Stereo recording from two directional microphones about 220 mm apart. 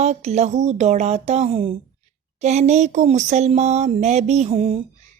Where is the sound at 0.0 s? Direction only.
30° right (ahead or behind).